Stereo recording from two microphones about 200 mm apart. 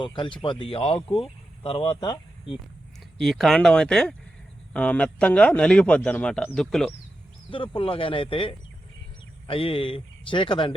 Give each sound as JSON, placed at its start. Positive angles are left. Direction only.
{"t": 0.0, "sound": "a man's voice", "side_deg": 25}
{"t": 3.2, "sound": "speech", "side_deg": 0}
{"t": 7.5, "sound": "a man's voice", "side_deg": 25}